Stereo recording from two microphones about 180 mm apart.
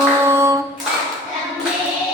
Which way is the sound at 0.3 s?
15° right (ahead or behind).